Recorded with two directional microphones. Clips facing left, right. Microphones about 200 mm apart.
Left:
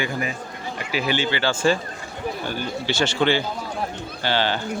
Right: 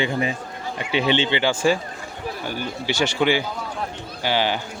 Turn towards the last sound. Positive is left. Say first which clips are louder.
# right 1 dB
turn(degrees=-15)  # may be behind; listen again after turning